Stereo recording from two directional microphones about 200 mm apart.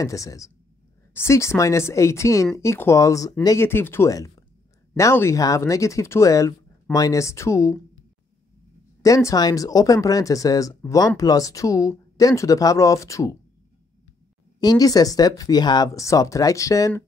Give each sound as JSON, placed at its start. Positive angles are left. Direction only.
{"t": 0.0, "sound": "speech", "side_deg": 15}
{"t": 9.0, "sound": "speech", "side_deg": 15}
{"t": 14.6, "sound": "speech", "side_deg": 20}